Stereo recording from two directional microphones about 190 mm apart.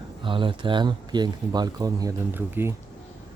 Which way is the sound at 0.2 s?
25° right (ahead or behind).